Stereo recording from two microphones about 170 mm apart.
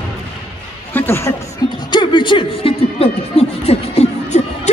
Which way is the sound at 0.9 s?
15° left (ahead or behind).